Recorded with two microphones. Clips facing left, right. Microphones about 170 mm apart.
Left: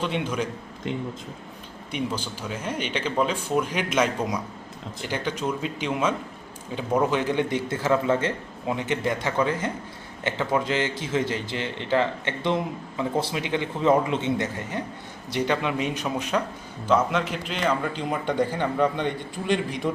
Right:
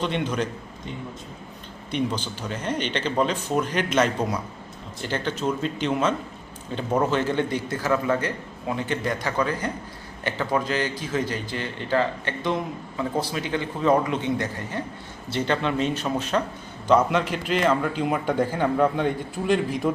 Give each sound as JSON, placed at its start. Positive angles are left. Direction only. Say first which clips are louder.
{"t": 0.0, "sound": "speech", "louder": "right 1 dB", "side_deg": 10}
{"t": 1.9, "sound": "a man's voice", "louder": "right 3 dB", "side_deg": 10}